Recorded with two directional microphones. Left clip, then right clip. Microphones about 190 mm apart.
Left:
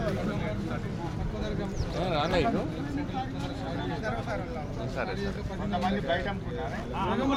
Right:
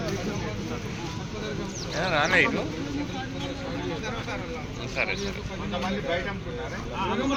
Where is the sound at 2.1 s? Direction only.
25° right (ahead or behind).